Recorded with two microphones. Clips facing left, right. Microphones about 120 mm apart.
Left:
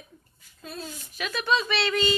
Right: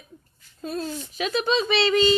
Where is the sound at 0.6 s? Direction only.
45° right (ahead or behind).